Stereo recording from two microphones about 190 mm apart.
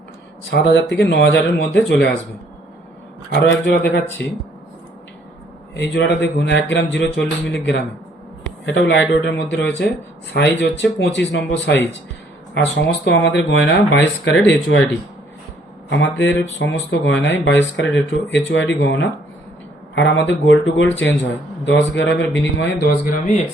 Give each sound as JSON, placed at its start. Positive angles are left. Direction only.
{"t": 0.5, "sound": "speech", "side_deg": 65}
{"t": 3.7, "sound": "speech", "side_deg": 60}
{"t": 5.7, "sound": "speech", "side_deg": 65}